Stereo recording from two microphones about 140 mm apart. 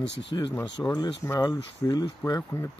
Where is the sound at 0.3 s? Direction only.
25° left (ahead or behind).